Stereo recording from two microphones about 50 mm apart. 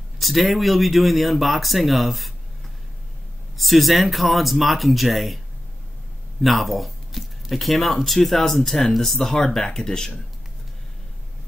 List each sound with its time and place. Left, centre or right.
0.2 s speech: centre
3.5 s speech: centre
6.4 s speech: centre